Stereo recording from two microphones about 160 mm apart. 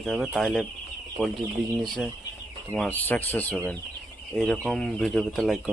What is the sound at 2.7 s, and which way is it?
Speech, 10° left (ahead or behind).